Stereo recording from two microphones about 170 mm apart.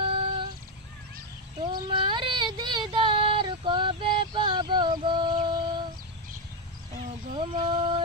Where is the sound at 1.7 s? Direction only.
30° right (ahead or behind).